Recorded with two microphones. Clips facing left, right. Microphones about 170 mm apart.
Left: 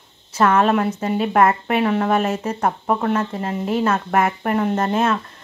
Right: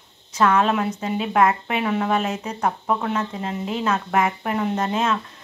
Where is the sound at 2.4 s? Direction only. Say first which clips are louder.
Left 3 dB; 50° left (ahead or behind).